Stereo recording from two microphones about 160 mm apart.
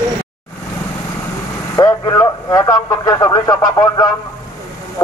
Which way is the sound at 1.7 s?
20° left (ahead or behind).